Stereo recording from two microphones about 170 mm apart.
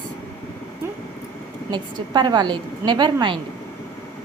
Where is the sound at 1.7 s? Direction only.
25° right (ahead or behind).